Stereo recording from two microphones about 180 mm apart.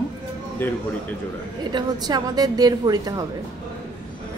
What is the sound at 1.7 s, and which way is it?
A woman's voice, 25° right (ahead or behind).